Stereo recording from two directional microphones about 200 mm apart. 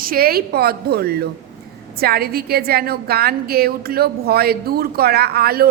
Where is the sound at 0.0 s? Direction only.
45° right (ahead or behind).